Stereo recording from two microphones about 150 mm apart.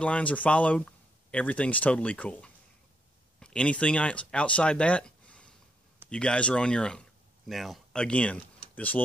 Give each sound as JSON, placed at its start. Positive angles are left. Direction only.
{"t": 0.0, "sound": "speech", "side_deg": 10}